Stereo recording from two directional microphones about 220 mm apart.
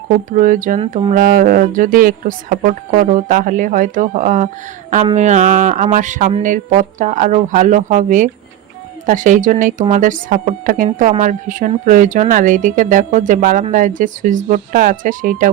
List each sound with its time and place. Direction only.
0.3 s a woman's voice: 35° right (ahead or behind)